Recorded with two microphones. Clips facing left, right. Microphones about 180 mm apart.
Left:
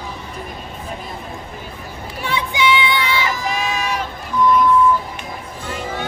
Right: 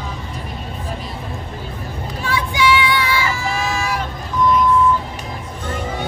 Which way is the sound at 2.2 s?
20° left (ahead or behind).